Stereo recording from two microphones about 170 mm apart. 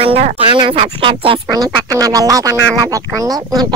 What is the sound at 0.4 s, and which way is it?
Speech, 30° right (ahead or behind).